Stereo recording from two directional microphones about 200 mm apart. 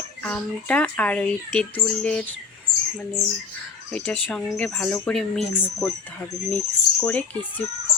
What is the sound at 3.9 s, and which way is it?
Speech, 5° left (ahead or behind).